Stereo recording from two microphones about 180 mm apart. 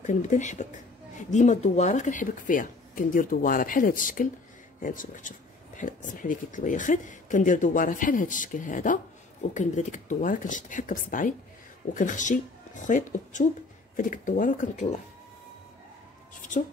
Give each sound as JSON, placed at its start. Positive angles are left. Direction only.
{"t": 0.0, "sound": "speech", "side_deg": 45}